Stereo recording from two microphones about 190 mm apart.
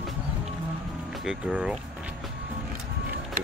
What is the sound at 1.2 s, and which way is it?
Speech, 5° right (ahead or behind).